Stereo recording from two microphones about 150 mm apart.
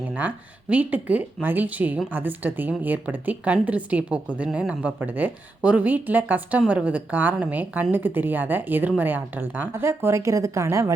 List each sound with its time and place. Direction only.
0.1 s speech: 10° right (ahead or behind)